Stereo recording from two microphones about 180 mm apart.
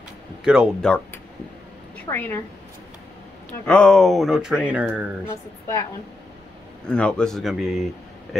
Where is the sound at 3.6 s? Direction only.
5° left (ahead or behind).